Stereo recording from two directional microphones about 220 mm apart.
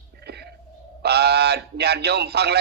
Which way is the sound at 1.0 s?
50° right (ahead or behind).